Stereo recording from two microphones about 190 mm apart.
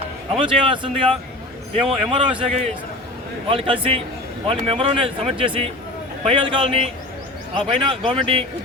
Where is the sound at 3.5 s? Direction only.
30° right (ahead or behind).